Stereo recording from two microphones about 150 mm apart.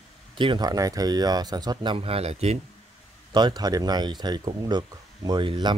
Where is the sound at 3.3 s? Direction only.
30° right (ahead or behind).